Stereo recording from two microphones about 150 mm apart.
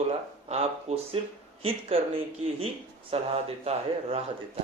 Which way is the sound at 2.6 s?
40° right (ahead or behind).